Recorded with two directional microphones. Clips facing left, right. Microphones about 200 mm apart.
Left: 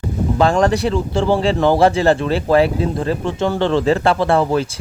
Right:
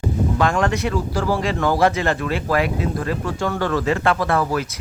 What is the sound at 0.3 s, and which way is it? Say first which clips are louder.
Speech: left 7 dB; 35° left (ahead or behind).